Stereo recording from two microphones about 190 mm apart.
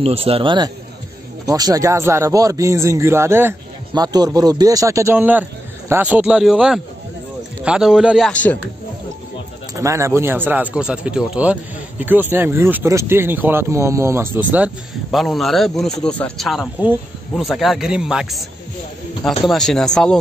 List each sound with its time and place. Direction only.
0.0 s speech: 30° right (ahead or behind); by 8.3 s 5° right (ahead or behind)
8.3 s a man's voice: 5° left (ahead or behind)
9.8 s speech: 15° right (ahead or behind); by 20.2 s 5° left (ahead or behind)